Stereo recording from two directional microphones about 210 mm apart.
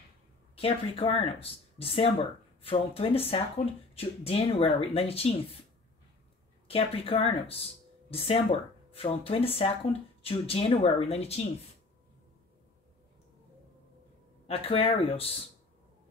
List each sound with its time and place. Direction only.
0.6 s speech: 25° left (ahead or behind)
6.7 s speech: 25° left (ahead or behind)
14.5 s speech: 25° left (ahead or behind)